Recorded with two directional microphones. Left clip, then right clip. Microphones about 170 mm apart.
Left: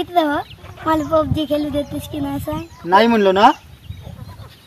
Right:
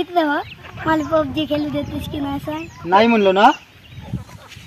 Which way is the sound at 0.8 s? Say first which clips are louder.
Left 1 dB; 90° left.